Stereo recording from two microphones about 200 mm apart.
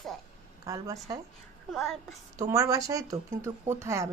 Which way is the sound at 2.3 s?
15° right (ahead or behind).